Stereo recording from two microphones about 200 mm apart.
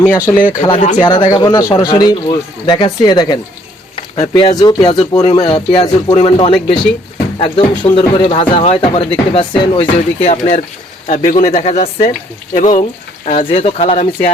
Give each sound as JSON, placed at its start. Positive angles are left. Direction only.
{"t": 0.0, "sound": "speech", "side_deg": 5}
{"t": 0.9, "sound": "speech", "side_deg": 20}
{"t": 3.9, "sound": "a sound", "side_deg": 25}
{"t": 4.6, "sound": "speech", "side_deg": 25}